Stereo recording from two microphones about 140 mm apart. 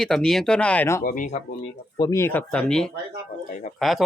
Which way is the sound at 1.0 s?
80° left.